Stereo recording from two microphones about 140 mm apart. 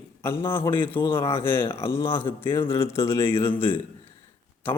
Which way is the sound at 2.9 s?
20° left (ahead or behind).